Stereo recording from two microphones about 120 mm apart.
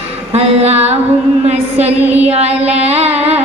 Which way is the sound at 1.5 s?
65° right (ahead or behind).